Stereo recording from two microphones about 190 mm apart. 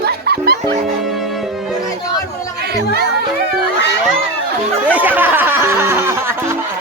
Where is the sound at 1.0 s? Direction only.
Centre (ahead or behind).